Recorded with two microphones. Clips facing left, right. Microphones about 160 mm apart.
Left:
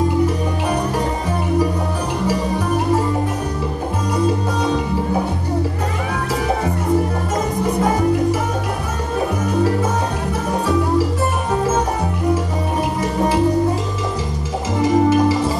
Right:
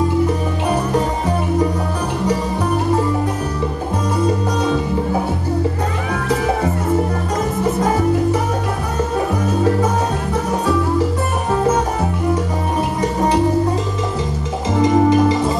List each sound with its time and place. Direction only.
14.8 s music: 20° right (ahead or behind)